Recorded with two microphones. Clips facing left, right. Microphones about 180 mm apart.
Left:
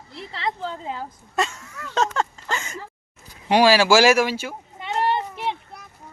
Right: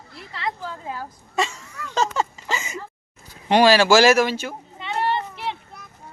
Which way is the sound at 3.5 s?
10° left (ahead or behind).